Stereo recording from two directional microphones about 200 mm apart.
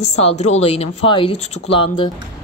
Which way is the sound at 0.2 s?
30° left (ahead or behind).